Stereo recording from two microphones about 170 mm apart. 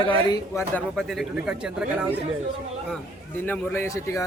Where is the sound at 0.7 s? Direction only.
Centre (ahead or behind).